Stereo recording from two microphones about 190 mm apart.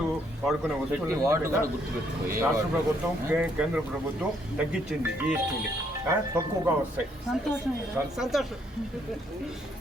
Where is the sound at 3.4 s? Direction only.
5° right (ahead or behind).